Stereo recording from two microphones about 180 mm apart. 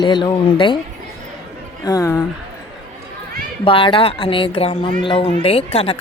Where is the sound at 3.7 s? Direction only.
30° left (ahead or behind).